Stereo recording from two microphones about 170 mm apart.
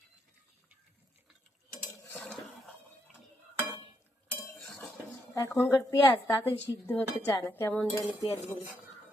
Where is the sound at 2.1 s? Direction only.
10° left (ahead or behind).